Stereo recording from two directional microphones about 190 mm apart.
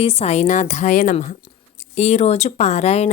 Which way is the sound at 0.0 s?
30° left (ahead or behind).